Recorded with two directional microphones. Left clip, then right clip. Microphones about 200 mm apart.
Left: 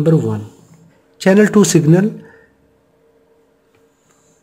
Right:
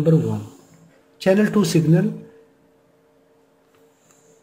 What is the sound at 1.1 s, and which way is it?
Speech, 40° left (ahead or behind).